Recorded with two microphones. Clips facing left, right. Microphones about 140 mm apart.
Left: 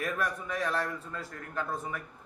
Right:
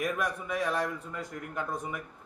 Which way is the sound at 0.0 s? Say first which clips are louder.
Right 1 dB; 15° right (ahead or behind).